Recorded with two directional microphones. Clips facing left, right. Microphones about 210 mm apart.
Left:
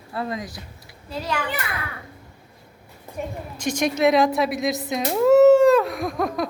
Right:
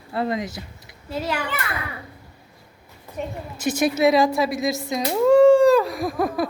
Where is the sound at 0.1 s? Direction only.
25° right (ahead or behind).